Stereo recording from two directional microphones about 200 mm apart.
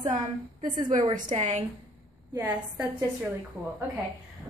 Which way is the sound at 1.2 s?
35° right (ahead or behind).